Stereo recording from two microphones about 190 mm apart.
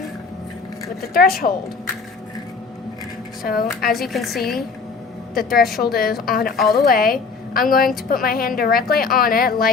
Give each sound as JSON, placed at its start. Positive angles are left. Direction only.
{"t": 1.1, "sound": "a woman's voice", "side_deg": 50}
{"t": 3.4, "sound": "a woman's voice", "side_deg": 50}
{"t": 3.9, "sound": "speech", "side_deg": 0}
{"t": 5.3, "sound": "a woman's voice", "side_deg": 50}